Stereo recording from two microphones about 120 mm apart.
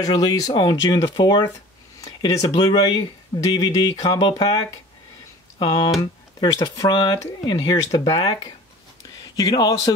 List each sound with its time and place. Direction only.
0.0 s speech: 35° left (ahead or behind)
5.6 s speech: 40° left (ahead or behind)
9.4 s speech: 35° left (ahead or behind)